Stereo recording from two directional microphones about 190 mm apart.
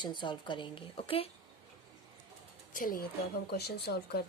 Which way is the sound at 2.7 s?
45° left (ahead or behind).